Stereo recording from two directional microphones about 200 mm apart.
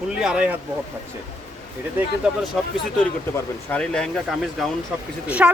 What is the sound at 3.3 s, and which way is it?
Speech, 5° left (ahead or behind).